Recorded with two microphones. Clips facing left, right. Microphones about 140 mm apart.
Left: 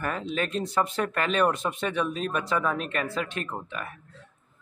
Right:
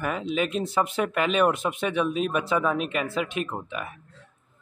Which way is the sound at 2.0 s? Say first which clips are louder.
Right 5 dB; 15° right (ahead or behind).